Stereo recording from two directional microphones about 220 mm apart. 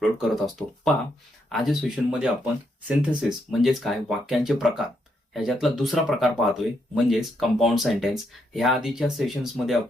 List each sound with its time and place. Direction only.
0.0 s speech: centre (ahead or behind)